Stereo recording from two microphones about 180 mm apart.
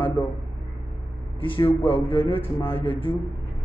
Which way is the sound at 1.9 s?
30° left (ahead or behind).